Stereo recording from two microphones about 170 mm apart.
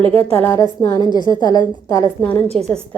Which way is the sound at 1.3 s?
25° left (ahead or behind).